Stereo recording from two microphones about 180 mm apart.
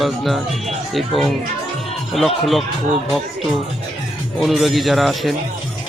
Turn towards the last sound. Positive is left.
turn(degrees=0)  # may be behind; listen again after turning